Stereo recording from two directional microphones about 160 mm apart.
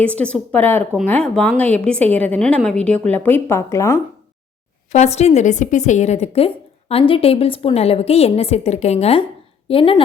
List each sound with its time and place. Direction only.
0.0 s a woman's voice: 10° left (ahead or behind)
4.9 s a woman's voice: 45° left (ahead or behind)